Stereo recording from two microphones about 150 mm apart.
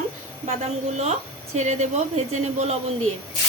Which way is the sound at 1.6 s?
50° right (ahead or behind).